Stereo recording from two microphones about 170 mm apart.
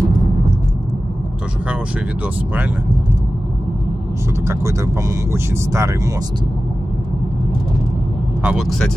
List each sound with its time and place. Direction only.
4.5 s speech: 15° right (ahead or behind)
8.4 s speech: 5° right (ahead or behind)